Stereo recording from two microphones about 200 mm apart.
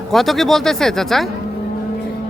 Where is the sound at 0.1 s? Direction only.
Centre (ahead or behind).